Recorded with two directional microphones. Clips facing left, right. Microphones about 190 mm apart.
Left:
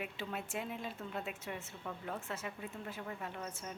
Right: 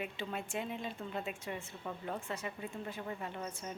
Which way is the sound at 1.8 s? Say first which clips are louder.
Right 2 dB; 10° right (ahead or behind).